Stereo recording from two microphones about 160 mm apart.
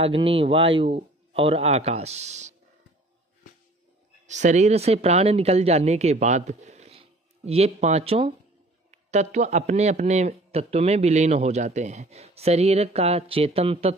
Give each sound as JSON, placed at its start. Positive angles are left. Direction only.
{"t": 0.0, "sound": "speech", "side_deg": -35}
{"t": 4.3, "sound": "speech", "side_deg": -50}